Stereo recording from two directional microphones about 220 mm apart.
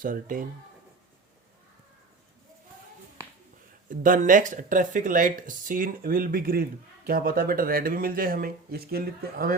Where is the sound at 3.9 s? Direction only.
35° right (ahead or behind).